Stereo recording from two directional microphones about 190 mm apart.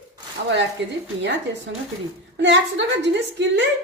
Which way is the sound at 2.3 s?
70° right (ahead or behind).